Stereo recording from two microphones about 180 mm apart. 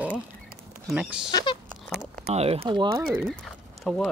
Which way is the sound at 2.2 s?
35° right (ahead or behind).